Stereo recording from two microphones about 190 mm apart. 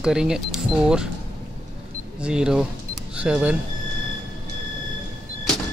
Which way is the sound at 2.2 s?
5° right (ahead or behind).